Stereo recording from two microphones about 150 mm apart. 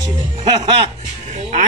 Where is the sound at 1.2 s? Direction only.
50° right (ahead or behind).